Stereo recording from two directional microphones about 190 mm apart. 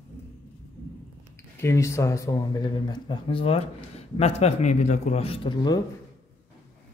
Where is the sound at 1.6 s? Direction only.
15° left (ahead or behind).